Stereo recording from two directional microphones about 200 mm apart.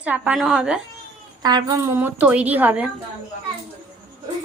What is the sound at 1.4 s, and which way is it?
Speech, 20° right (ahead or behind).